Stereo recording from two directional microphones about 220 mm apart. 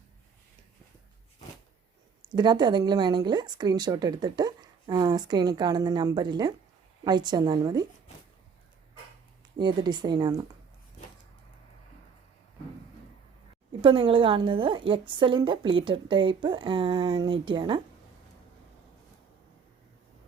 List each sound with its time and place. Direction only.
2.3 s speech: 20° right (ahead or behind)
9.6 s speech: 20° right (ahead or behind)
13.8 s speech: 25° right (ahead or behind)